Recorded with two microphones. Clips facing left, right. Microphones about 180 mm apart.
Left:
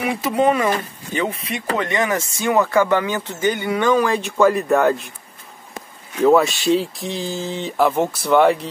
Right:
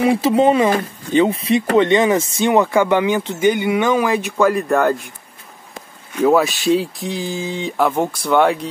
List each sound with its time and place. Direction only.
0.0 s speech: 25° right (ahead or behind); by 5.1 s centre (ahead or behind)
6.1 s speech: centre (ahead or behind)